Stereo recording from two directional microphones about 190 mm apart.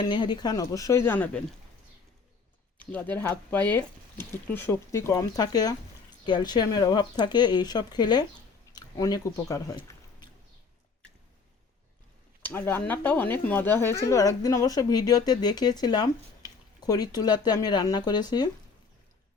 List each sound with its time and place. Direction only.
0.1 s speech: 25° left (ahead or behind)
2.7 s speech: 10° left (ahead or behind)
8.7 s chewing: 20° left (ahead or behind)
12.4 s speech: 10° left (ahead or behind)